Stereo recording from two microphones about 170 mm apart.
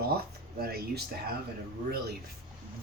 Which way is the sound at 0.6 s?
65° right (ahead or behind).